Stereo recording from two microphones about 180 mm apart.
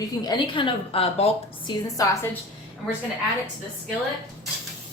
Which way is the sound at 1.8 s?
20° left (ahead or behind).